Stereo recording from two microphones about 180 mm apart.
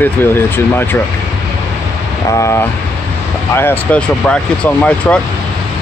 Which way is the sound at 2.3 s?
15° left (ahead or behind).